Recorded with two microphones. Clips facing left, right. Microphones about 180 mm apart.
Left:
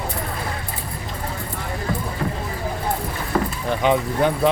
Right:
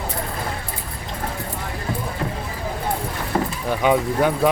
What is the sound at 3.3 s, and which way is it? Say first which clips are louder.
Keys jangling: left 1 dB; 25° right (ahead or behind).